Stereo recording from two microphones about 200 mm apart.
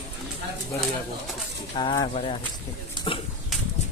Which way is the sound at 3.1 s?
25° left (ahead or behind).